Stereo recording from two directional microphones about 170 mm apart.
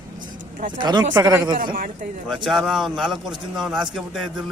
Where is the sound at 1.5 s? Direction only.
55° right (ahead or behind).